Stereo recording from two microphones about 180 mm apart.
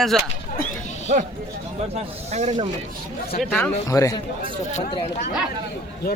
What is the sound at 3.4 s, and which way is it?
Speech, 5° left (ahead or behind).